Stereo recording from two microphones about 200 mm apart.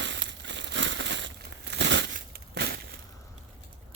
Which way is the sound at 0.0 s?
65° right (ahead or behind).